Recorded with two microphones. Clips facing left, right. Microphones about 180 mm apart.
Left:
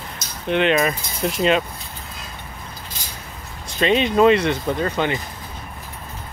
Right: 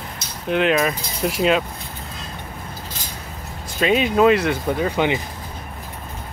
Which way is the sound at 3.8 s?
5° right (ahead or behind).